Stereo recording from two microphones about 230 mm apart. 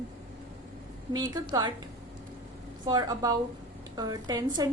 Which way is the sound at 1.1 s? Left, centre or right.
Centre.